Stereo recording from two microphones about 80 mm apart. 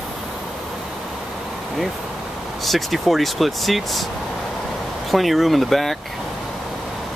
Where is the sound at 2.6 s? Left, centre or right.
Centre.